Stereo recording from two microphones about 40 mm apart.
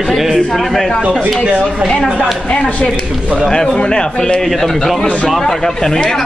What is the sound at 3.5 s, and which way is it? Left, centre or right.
Speech, centre.